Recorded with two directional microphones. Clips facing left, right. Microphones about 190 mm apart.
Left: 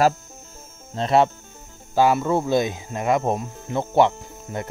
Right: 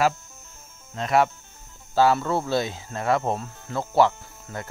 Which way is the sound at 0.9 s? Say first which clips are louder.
Left 3 dB; 30° left (ahead or behind).